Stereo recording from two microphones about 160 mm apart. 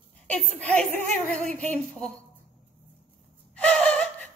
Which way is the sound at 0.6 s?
10° left (ahead or behind).